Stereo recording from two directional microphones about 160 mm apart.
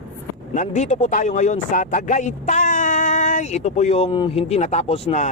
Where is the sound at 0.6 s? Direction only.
45° left (ahead or behind).